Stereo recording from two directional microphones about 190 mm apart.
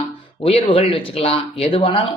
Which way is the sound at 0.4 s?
30° left (ahead or behind).